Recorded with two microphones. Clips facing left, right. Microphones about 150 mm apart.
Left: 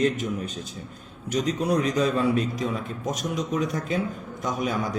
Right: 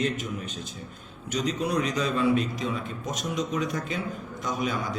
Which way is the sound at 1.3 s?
40° left (ahead or behind).